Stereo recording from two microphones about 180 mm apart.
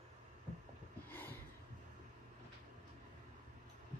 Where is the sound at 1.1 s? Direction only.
10° left (ahead or behind).